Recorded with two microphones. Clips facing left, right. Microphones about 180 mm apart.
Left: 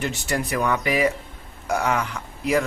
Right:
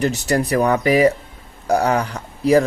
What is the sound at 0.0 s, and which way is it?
Speech, 40° right (ahead or behind).